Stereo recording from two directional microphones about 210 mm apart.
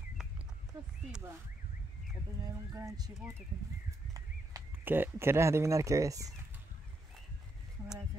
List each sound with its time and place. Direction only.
2.7 s speech: 15° right (ahead or behind)
4.1 s speech: 15° right (ahead or behind)